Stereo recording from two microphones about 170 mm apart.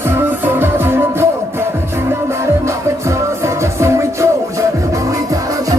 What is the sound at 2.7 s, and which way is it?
Music, 15° right (ahead or behind).